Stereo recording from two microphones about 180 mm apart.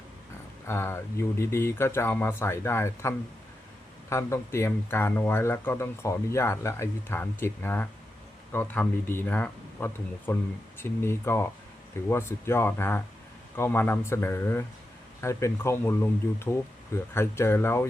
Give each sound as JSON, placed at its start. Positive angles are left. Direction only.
{"t": 0.7, "sound": "speech", "side_deg": 15}